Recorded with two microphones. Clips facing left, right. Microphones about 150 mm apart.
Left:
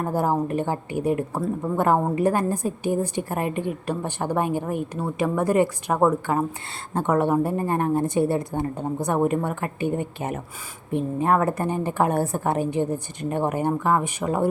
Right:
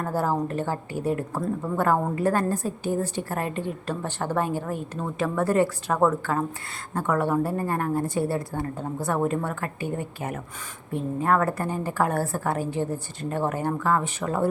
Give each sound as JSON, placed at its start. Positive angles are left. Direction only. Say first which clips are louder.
{"t": 0.0, "sound": "a woman's voice", "louder": "left 2 dB", "side_deg": 15}